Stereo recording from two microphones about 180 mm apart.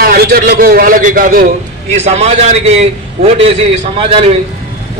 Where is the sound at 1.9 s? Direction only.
40° right (ahead or behind).